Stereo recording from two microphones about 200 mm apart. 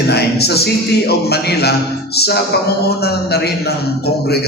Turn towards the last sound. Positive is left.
turn(degrees=55)  # may be behind; listen again after turning